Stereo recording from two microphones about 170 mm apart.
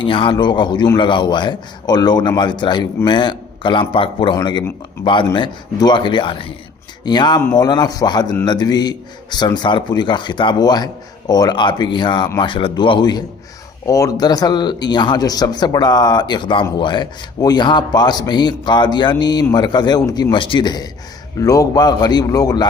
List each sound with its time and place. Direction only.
0.0 s a man's voice: 30° left (ahead or behind)